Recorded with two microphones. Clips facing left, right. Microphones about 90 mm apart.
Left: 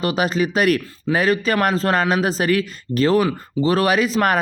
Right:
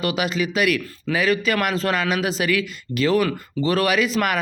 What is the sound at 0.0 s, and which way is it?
Speech, 35° left (ahead or behind).